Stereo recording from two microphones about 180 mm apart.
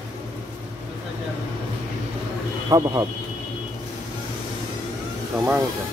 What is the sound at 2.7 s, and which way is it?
Speech, 20° right (ahead or behind).